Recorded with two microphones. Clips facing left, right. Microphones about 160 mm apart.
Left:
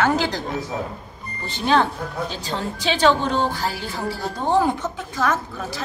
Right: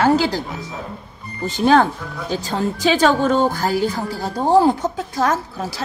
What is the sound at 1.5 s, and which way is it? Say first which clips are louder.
A woman's voice: right 5 dB; 45° right (ahead or behind).